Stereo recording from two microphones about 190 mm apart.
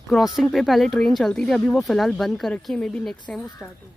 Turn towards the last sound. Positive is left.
turn(degrees=5)  # may be behind; listen again after turning